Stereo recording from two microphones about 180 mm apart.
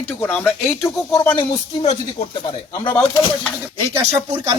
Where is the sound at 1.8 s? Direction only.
40° left (ahead or behind).